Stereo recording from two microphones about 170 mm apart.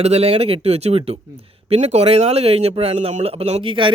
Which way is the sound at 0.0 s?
40° right (ahead or behind).